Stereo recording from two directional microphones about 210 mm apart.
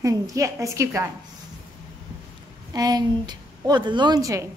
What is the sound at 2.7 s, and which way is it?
A woman's voice, 20° right (ahead or behind).